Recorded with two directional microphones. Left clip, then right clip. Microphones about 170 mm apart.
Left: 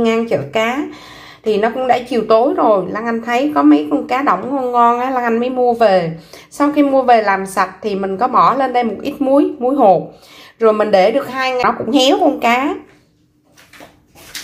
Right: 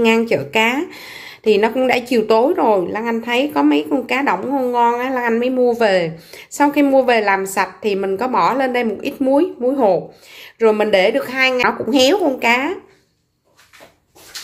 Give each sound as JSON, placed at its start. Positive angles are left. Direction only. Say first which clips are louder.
{"t": 0.0, "sound": "a woman's voice", "louder": "even", "side_deg": -30}